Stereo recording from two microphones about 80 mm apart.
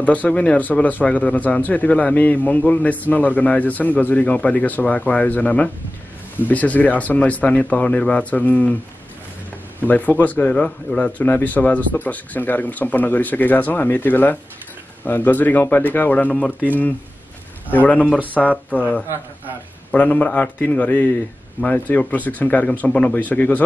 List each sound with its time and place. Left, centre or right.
0.0 s speech: centre
9.8 s speech: left